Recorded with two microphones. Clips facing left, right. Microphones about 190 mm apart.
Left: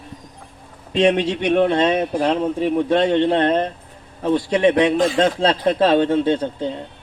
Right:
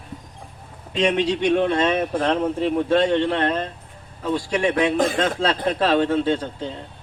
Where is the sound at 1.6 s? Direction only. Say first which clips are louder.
Left 3 dB; 25° left (ahead or behind).